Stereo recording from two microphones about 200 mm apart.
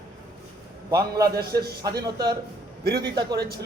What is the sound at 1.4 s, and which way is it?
Speech, 50° right (ahead or behind).